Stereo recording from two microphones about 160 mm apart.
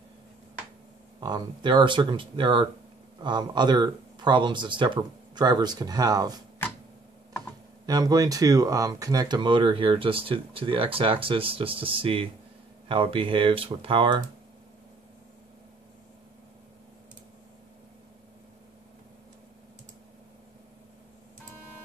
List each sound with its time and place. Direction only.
1.2 s speech: 25° right (ahead or behind)
7.8 s speech: 25° right (ahead or behind)